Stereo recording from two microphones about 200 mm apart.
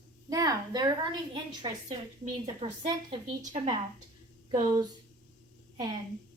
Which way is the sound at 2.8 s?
25° right (ahead or behind).